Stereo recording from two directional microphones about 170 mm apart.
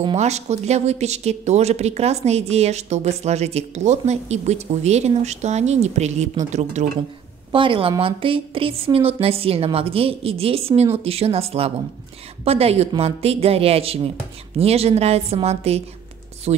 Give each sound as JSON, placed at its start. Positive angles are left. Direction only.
{"t": 0.0, "sound": "speech", "side_deg": -40}
{"t": 7.5, "sound": "speech", "side_deg": -30}